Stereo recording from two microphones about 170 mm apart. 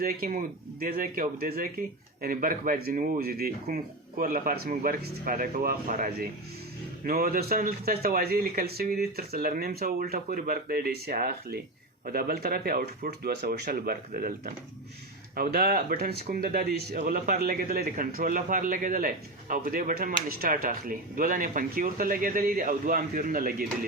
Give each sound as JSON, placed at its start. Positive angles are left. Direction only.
{"t": 0.0, "sound": "speech", "side_deg": -55}